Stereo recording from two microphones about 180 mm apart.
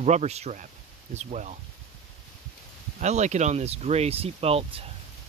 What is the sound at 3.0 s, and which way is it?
Speech, 40° right (ahead or behind).